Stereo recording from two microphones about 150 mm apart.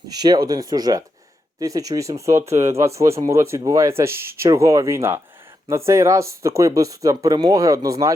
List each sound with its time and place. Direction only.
0.1 s speech: 25° right (ahead or behind)